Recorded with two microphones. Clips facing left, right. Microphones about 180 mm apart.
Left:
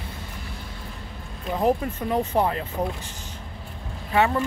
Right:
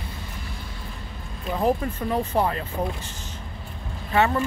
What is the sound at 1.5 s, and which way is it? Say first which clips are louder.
Speech: left 1 dB; 15° left (ahead or behind).